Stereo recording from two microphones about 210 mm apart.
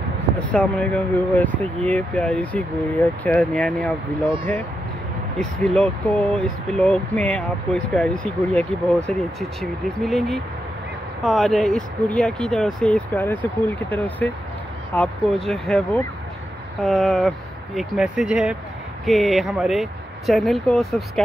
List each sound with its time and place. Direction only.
0.5 s speech: 5° left (ahead or behind)
5.4 s speech: 5° left (ahead or behind)